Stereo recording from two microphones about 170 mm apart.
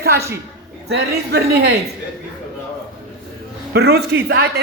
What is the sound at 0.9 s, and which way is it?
Speech, 75° right (ahead or behind).